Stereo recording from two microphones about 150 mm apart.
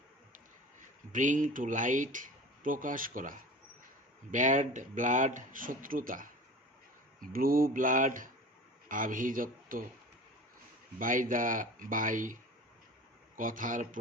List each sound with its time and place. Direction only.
1.1 s speech: 60° right (ahead or behind)
7.2 s speech: 75° right (ahead or behind)
11.0 s speech: 65° right (ahead or behind)